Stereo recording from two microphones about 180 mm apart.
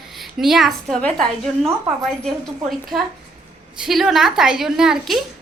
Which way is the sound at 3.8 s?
Centre (ahead or behind).